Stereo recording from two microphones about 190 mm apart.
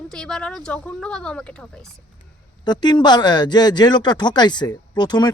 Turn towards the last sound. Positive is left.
turn(degrees=20)  # may be behind; listen again after turning